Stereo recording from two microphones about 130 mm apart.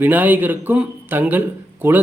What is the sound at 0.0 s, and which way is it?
Speech, 15° right (ahead or behind).